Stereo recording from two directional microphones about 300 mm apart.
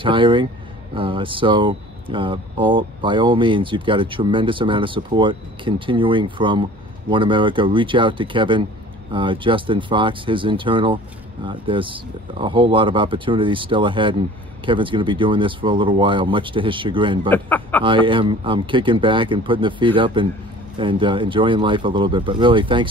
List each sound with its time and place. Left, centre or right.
0.0 s speech: centre
17.3 s speech: centre
17.8 s speech: centre